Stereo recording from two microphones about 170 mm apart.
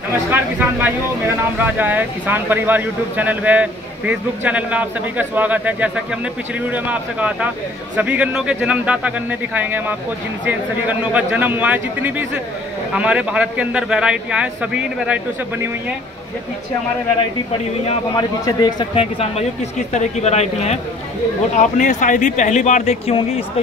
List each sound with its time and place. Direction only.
0.3 s speech: 10° right (ahead or behind)
18.1 s speech: 25° left (ahead or behind); by 23.1 s 45° left (ahead or behind)